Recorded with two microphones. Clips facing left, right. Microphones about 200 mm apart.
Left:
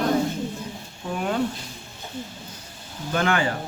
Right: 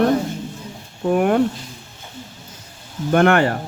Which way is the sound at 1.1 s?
60° right (ahead or behind).